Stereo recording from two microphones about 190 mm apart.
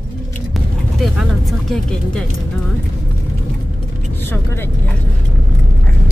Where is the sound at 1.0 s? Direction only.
Centre (ahead or behind).